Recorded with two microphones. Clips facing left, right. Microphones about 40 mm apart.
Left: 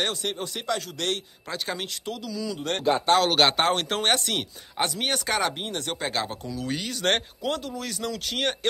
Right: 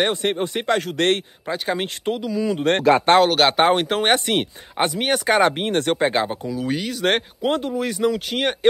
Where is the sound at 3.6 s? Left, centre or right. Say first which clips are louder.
Right 7 dB; centre.